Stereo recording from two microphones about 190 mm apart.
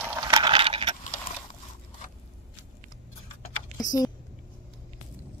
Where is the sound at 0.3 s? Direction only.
25° right (ahead or behind).